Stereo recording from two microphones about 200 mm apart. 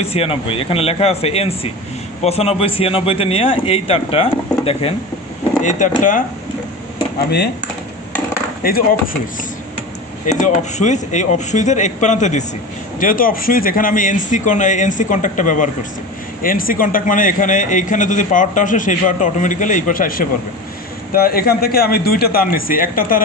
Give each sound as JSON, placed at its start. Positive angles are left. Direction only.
{"t": 0.0, "sound": "a man's voice", "side_deg": 30}
{"t": 6.0, "sound": "a man's voice", "side_deg": 40}
{"t": 7.3, "sound": "speech", "side_deg": 55}
{"t": 8.6, "sound": "a man's voice", "side_deg": 50}
{"t": 10.4, "sound": "a man's voice", "side_deg": 35}